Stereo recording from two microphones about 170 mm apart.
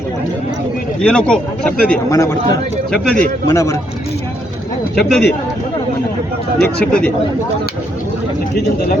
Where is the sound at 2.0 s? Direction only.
20° left (ahead or behind).